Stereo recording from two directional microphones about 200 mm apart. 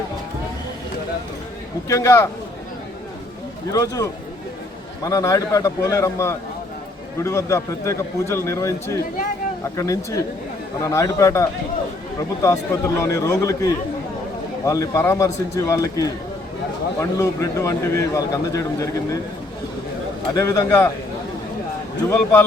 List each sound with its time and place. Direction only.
1.9 s a man's voice: 15° left (ahead or behind)
3.7 s a man's voice: 15° left (ahead or behind)
20.3 s a man's voice: 15° left (ahead or behind)
22.1 s a man's voice: 10° left (ahead or behind)